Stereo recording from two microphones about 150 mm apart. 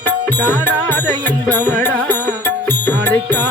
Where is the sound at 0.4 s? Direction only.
15° left (ahead or behind).